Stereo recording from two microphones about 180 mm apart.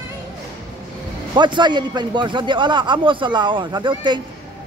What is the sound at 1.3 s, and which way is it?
A man's voice, 25° right (ahead or behind).